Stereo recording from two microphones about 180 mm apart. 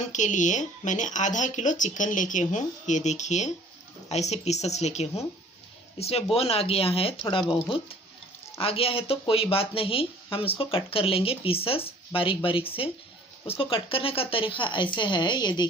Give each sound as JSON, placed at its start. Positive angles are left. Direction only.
{"t": 0.1, "sound": "speech", "side_deg": 45}